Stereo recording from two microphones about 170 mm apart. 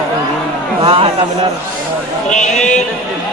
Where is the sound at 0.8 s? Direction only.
30° right (ahead or behind).